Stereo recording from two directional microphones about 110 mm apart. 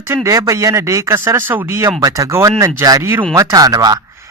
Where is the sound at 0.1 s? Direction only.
30° right (ahead or behind).